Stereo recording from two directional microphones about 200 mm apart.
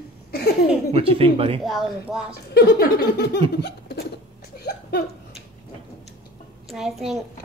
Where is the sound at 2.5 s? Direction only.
50° left (ahead or behind).